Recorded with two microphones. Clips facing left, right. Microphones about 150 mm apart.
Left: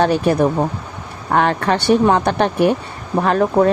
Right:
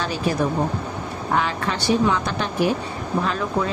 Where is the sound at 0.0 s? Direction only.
60° left (ahead or behind).